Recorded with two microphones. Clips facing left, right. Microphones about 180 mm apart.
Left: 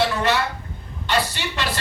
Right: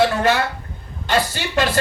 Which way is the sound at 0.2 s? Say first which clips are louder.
Right 3 dB; 45° right (ahead or behind).